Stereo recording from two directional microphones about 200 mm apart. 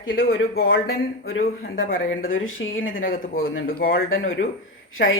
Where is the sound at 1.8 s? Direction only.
45° left (ahead or behind).